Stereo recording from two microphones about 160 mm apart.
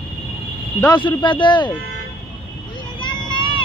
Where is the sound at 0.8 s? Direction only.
30° left (ahead or behind).